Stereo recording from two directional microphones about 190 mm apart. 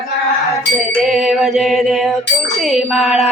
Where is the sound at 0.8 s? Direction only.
Centre (ahead or behind).